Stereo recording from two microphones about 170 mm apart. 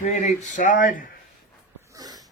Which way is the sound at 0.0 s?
45° left (ahead or behind).